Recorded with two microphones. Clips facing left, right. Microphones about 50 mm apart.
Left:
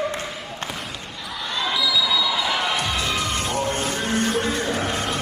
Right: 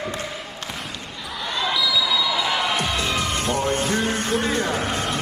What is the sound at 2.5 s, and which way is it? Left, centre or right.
Music, centre.